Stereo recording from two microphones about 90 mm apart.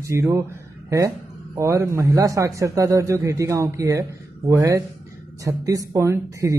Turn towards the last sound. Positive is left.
turn(degrees=-35)  # may be behind; listen again after turning